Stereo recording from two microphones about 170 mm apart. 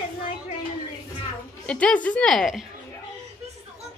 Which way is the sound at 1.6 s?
5° left (ahead or behind).